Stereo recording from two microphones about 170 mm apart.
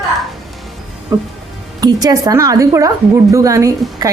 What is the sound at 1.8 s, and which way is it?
A woman's voice, 20° right (ahead or behind).